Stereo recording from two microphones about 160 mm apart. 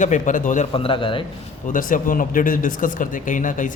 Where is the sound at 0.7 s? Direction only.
35° left (ahead or behind).